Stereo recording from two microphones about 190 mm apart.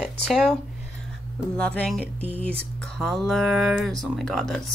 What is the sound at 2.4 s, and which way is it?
Speech, 5° left (ahead or behind).